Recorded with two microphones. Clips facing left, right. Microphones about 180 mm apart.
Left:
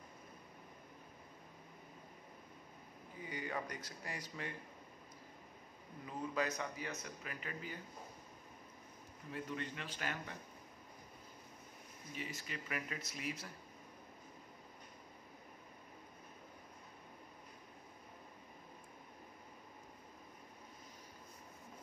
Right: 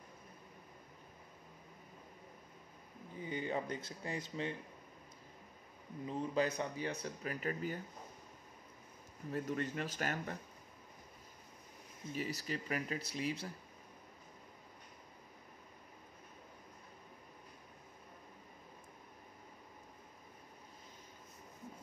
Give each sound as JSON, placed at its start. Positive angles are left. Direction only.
{"t": 3.3, "sound": "speech", "side_deg": -25}
{"t": 6.0, "sound": "speech", "side_deg": -30}
{"t": 9.3, "sound": "speech", "side_deg": -45}
{"t": 12.2, "sound": "speech", "side_deg": -35}